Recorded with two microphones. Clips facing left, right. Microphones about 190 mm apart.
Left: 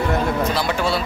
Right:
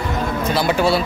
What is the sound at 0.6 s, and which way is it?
Speech, 10° right (ahead or behind).